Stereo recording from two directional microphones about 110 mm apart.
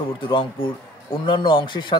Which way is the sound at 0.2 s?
45° left (ahead or behind).